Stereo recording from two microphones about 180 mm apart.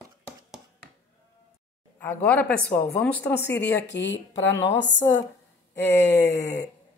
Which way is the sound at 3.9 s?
80° left.